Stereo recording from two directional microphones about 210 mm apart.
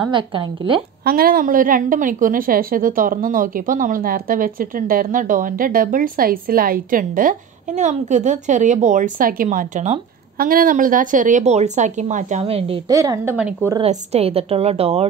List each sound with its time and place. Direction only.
0.1 s a woman's voice: 25° right (ahead or behind)
1.0 s a woman's voice: 45° right (ahead or behind); by 13.5 s 10° right (ahead or behind)
13.8 s a woman's voice: 30° right (ahead or behind)